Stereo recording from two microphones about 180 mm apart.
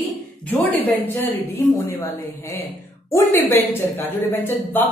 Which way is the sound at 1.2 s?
10° left (ahead or behind).